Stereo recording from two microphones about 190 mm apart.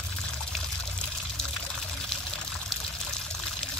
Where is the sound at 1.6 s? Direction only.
5° left (ahead or behind).